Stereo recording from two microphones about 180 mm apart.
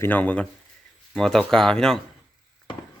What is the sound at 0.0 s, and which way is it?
Speech, 10° left (ahead or behind).